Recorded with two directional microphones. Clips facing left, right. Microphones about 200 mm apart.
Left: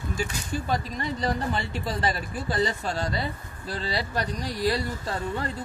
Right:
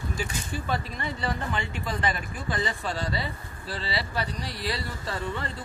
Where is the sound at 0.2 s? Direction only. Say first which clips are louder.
Left 5 dB; 40° left (ahead or behind).